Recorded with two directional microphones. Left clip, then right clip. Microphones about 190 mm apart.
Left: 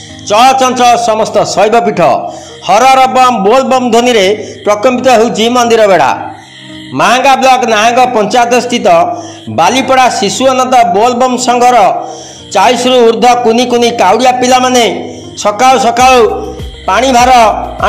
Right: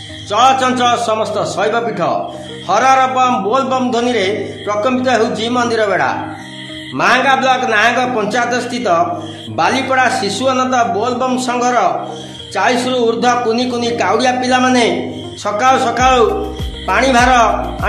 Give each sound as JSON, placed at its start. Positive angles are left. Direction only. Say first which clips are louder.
{"t": 0.3, "sound": "a man's voice", "louder": "left 6 dB", "side_deg": 30}